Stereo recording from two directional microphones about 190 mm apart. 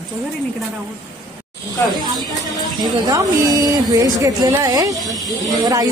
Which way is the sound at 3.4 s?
20° right (ahead or behind).